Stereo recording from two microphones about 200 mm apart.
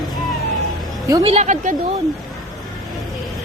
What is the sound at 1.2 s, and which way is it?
Speech, 30° right (ahead or behind).